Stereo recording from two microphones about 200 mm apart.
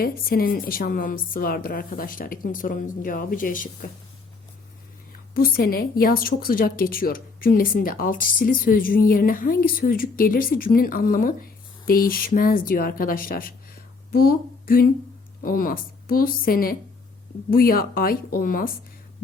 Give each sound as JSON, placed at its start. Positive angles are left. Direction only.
{"t": 0.0, "sound": "a woman's voice", "side_deg": 45}
{"t": 5.3, "sound": "a woman's voice", "side_deg": 50}